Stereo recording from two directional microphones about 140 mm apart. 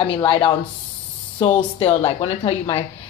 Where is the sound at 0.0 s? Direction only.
40° left (ahead or behind).